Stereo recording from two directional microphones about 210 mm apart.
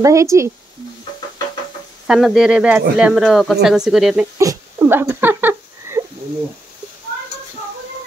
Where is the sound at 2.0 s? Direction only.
Centre (ahead or behind).